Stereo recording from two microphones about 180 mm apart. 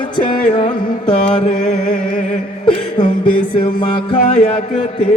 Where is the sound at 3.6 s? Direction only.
25° left (ahead or behind).